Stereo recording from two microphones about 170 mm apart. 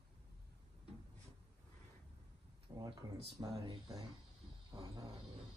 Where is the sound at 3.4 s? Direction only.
25° right (ahead or behind).